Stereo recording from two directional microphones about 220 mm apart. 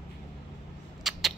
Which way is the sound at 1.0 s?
Centre (ahead or behind).